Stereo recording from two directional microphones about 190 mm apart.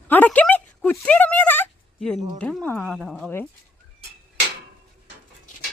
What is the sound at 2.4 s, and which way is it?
Speech, 5° left (ahead or behind).